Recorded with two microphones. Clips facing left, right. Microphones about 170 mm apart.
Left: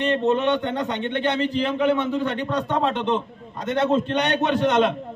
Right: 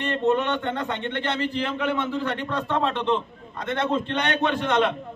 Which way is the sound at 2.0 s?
20° left (ahead or behind).